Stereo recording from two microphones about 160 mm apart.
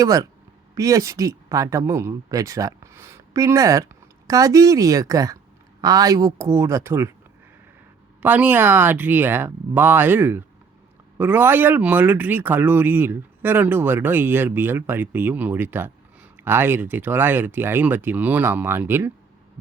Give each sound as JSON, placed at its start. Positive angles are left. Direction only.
{"t": 0.0, "sound": "speech", "side_deg": -20}
{"t": 8.2, "sound": "speech", "side_deg": -10}